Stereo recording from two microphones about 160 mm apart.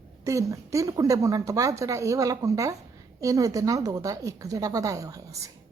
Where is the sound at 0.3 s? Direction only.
20° right (ahead or behind).